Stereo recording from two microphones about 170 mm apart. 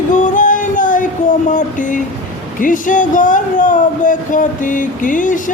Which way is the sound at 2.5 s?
50° left (ahead or behind).